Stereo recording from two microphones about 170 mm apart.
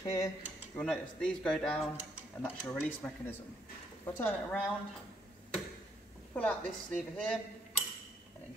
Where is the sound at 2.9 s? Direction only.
10° left (ahead or behind).